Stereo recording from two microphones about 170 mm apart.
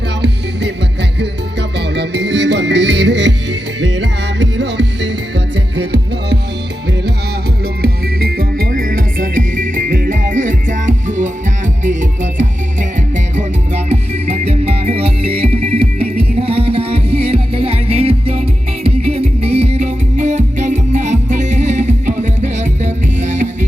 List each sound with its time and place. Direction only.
1.2 s music: 90° right
7.8 s music: 65° right (ahead or behind); by 23.6 s 45° right (ahead or behind)